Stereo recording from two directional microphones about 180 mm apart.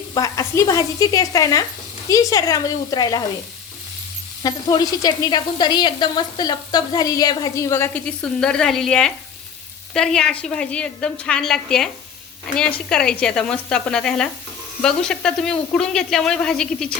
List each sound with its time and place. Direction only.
0.1 s speech: 20° left (ahead or behind)
4.4 s speech: 20° left (ahead or behind); by 17.0 s 5° left (ahead or behind)